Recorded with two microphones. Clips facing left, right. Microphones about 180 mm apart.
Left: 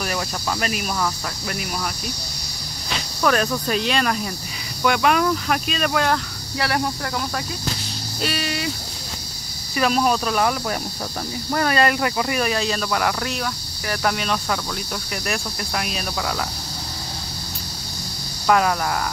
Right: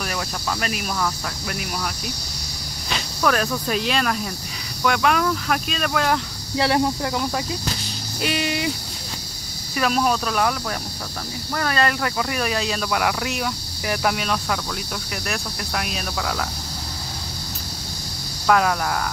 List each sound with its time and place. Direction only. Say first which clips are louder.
0.0 s speech: left 2 dB; 5° left (ahead or behind)
3.2 s speech: left 1 dB; centre (ahead or behind)
6.1 s speech: right 2 dB; 25° right (ahead or behind)
9.8 s speech: left 1 dB; centre (ahead or behind)
11.5 s speech: left 3 dB; 15° left (ahead or behind)
18.5 s speech: even; centre (ahead or behind)